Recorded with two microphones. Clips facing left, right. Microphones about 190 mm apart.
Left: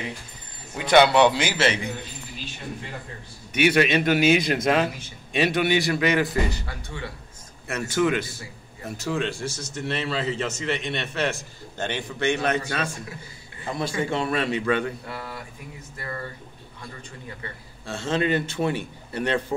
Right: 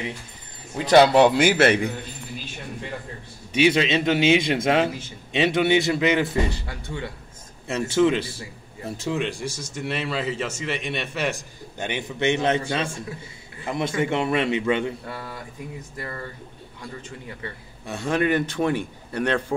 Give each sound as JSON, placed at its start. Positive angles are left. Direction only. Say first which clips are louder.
{"t": 0.7, "sound": "a man's voice", "louder": "right 2 dB", "side_deg": -35}
{"t": 3.8, "sound": "a man's voice", "louder": "even", "side_deg": -25}
{"t": 17.9, "sound": "a man's voice", "louder": "right 2 dB", "side_deg": 20}
{"t": 18.5, "sound": "a man's voice", "louder": "right 2 dB", "side_deg": 10}